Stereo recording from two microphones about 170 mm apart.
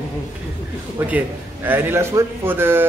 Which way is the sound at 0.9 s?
10° right (ahead or behind).